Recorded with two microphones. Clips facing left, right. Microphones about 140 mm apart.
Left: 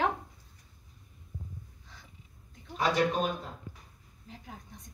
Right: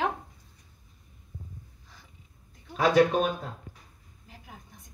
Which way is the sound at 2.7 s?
70° right (ahead or behind).